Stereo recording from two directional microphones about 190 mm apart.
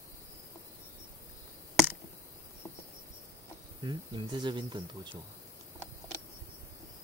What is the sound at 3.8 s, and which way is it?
Speech, 25° right (ahead or behind).